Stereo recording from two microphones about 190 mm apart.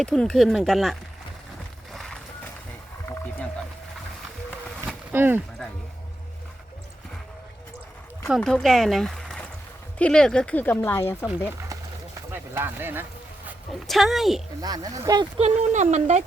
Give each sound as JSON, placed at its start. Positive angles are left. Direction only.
{"t": 0.0, "sound": "speech", "side_deg": 5}
{"t": 1.9, "sound": "music", "side_deg": 0}
{"t": 4.9, "sound": "a sound", "side_deg": -10}
{"t": 8.4, "sound": "speech", "side_deg": 5}
{"t": 12.3, "sound": "a sound", "side_deg": -10}
{"t": 13.7, "sound": "speech", "side_deg": 0}
{"t": 14.6, "sound": "speech", "side_deg": -20}
{"t": 15.4, "sound": "speech", "side_deg": -35}